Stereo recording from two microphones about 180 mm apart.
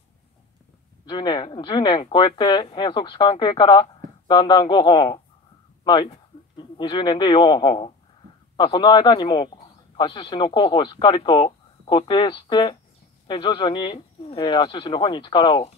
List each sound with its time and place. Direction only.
1.0 s a man's voice: 25° left (ahead or behind)